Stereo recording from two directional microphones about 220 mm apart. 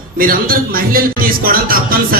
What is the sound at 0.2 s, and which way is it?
Speech, 40° right (ahead or behind).